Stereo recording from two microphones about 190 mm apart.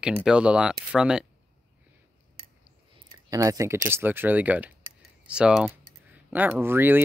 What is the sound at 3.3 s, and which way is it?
Speech, 15° right (ahead or behind).